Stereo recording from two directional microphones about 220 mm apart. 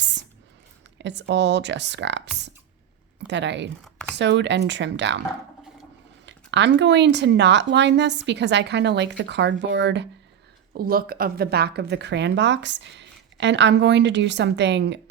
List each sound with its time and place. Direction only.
0.0 s a sound: 55° right (ahead or behind)
0.9 s speech: 50° right (ahead or behind)
6.2 s speech: 55° right (ahead or behind)
10.8 s speech: 40° right (ahead or behind)